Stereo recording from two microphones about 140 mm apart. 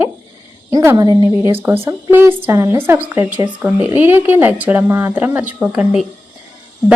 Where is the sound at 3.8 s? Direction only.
15° right (ahead or behind).